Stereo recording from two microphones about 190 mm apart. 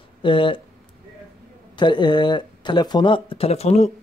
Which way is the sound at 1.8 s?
25° left (ahead or behind).